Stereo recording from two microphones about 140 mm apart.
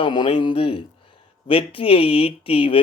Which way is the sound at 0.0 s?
35° left (ahead or behind).